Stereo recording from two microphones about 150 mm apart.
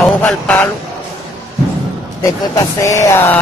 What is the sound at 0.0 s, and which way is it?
Speech, 10° left (ahead or behind).